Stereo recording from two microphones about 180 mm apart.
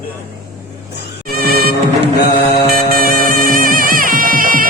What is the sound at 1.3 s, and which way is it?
Mosquito, 55° right (ahead or behind).